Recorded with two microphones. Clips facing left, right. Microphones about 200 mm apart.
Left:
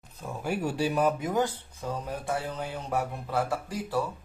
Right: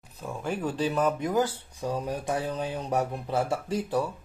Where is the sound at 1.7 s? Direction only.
15° right (ahead or behind).